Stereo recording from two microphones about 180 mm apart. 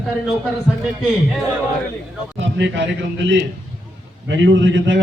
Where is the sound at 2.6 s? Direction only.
85° right.